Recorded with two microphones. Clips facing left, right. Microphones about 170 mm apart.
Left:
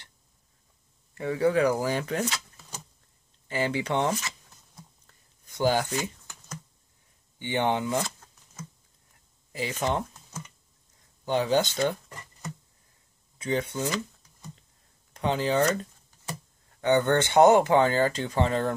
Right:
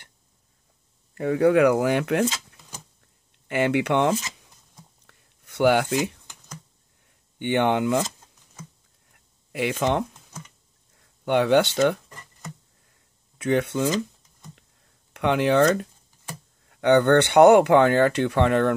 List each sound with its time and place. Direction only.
1.1 s speech: 50° right (ahead or behind)
3.4 s speech: 65° right (ahead or behind)
5.0 s a sound: 70° right (ahead or behind)
7.3 s speech: 60° right (ahead or behind)
9.5 s speech: 65° right (ahead or behind)
11.2 s speech: 65° right (ahead or behind)
13.4 s speech: 70° right (ahead or behind)
15.1 s speech: 65° right (ahead or behind)